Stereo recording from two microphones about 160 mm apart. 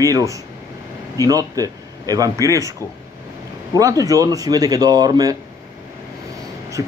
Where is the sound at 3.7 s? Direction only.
20° right (ahead or behind).